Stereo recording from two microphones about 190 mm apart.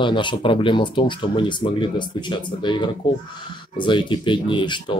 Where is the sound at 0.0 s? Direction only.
25° left (ahead or behind).